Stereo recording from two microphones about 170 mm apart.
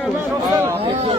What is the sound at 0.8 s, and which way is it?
Speech, 30° right (ahead or behind).